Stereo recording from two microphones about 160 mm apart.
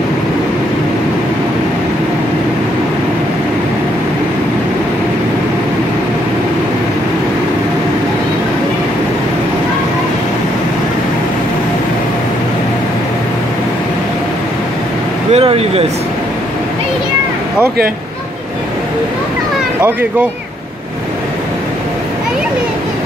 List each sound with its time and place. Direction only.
15.3 s vehicle: 40° right (ahead or behind)
19.8 s speech: 10° right (ahead or behind)